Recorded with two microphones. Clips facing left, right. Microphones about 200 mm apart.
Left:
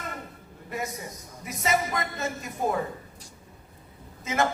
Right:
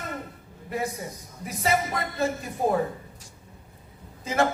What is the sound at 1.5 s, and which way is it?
A man's voice, 30° right (ahead or behind).